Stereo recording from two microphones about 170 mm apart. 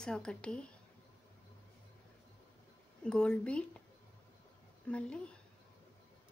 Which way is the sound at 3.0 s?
5° left (ahead or behind).